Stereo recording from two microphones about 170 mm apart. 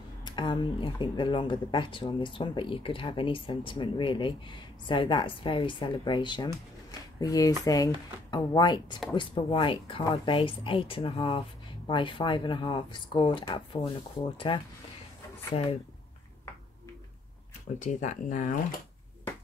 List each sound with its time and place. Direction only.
0.2 s speech: 25° left (ahead or behind)
17.7 s speech: 45° left (ahead or behind)